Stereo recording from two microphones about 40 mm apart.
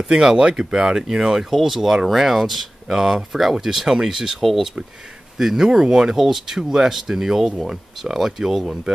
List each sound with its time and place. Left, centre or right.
0.1 s speech: centre
4.4 s speech: centre
5.4 s speech: centre